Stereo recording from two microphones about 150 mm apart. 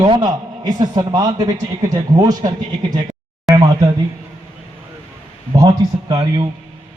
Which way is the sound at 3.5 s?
25° right (ahead or behind).